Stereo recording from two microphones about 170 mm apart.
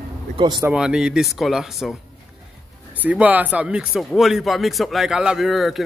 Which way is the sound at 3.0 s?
10° right (ahead or behind).